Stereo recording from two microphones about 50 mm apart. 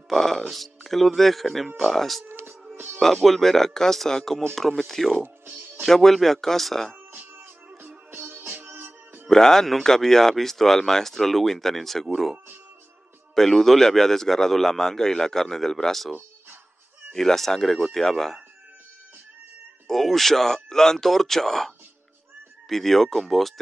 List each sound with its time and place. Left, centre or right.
0.1 s speech: centre
2.2 s music: right
3.0 s speech: centre
5.2 s music: right
5.9 s speech: centre
7.1 s music: right
9.3 s speech: centre
17.1 s speech: centre
19.9 s speech: centre